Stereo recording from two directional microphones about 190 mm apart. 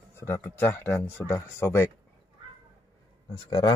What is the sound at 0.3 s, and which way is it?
Speech, 10° left (ahead or behind).